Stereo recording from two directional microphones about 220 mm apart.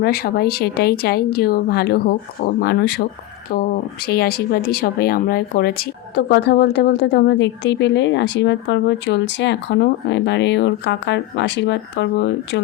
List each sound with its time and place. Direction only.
0.0 s speech: 45° left (ahead or behind)